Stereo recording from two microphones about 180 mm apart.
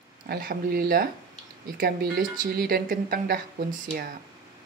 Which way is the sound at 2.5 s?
55° right (ahead or behind).